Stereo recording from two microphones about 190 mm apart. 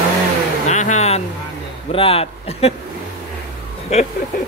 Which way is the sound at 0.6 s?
40° left (ahead or behind).